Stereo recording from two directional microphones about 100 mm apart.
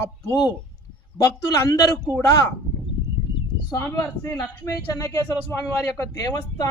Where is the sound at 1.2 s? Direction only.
35° left (ahead or behind).